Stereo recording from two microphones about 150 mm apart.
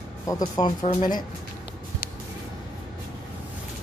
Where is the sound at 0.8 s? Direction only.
55° left (ahead or behind).